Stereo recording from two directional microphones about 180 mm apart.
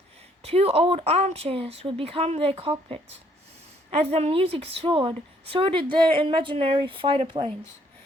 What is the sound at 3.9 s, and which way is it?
A woman's voice, 35° right (ahead or behind).